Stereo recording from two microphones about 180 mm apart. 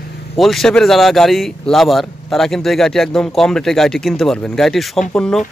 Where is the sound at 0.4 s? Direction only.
Centre (ahead or behind).